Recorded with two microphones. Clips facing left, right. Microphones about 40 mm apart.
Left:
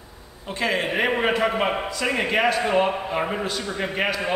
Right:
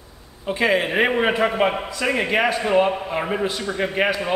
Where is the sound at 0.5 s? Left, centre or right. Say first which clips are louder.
Right 4 dB; centre.